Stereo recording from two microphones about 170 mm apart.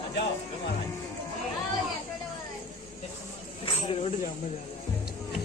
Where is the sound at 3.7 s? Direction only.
35° left (ahead or behind).